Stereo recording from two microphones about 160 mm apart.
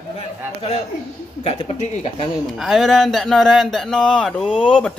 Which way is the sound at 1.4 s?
40° left (ahead or behind).